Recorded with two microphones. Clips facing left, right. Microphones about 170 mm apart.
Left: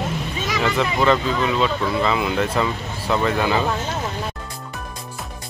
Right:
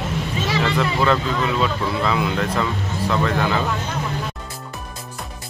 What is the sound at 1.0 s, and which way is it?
Speech, centre (ahead or behind).